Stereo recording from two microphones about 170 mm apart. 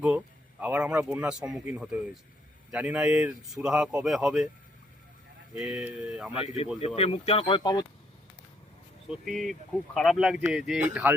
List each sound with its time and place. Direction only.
0.6 s speech: 10° right (ahead or behind)
5.5 s speech: 5° right (ahead or behind)
6.7 s speech: 35° left (ahead or behind)
9.0 s speech: centre (ahead or behind)